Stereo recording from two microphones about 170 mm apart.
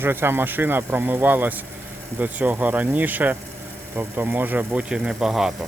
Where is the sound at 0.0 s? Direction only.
15° right (ahead or behind).